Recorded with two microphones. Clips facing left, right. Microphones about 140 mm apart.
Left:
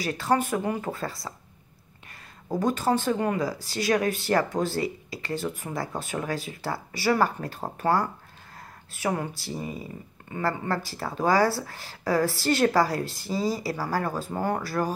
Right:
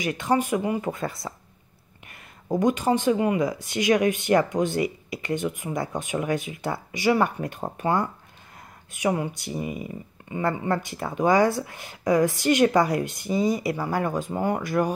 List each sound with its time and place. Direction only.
0.0 s speech: 20° right (ahead or behind)
2.8 s speech: 15° right (ahead or behind)